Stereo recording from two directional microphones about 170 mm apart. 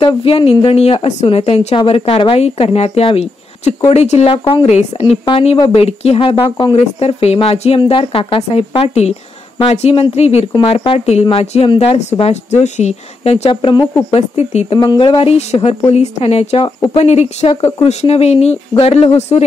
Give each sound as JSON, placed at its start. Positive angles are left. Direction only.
{"t": 0.0, "sound": "speech", "side_deg": 30}
{"t": 14.8, "sound": "speech", "side_deg": 25}